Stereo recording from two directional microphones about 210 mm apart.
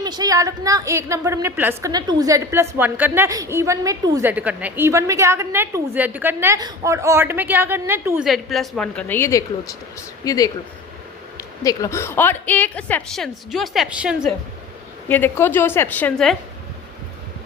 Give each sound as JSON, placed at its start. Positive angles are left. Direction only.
{"t": 0.0, "sound": "a woman's voice", "side_deg": -20}
{"t": 15.1, "sound": "a woman's voice", "side_deg": 10}